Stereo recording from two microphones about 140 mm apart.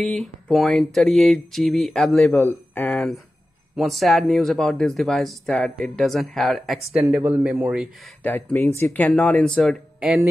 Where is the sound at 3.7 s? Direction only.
Centre (ahead or behind).